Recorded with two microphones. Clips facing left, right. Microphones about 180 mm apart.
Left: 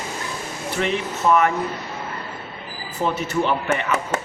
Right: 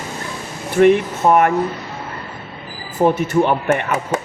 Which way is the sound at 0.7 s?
50° right (ahead or behind).